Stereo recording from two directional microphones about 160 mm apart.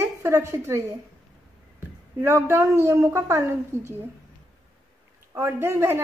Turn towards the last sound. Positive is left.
turn(degrees=-15)  # may be behind; listen again after turning